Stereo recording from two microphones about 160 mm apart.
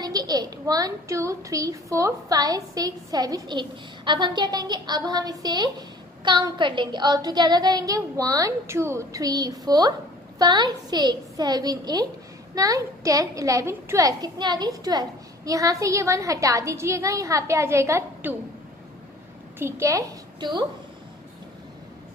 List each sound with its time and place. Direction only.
0.0 s a child's voice: 25° right (ahead or behind)
19.6 s a child's voice: 15° right (ahead or behind)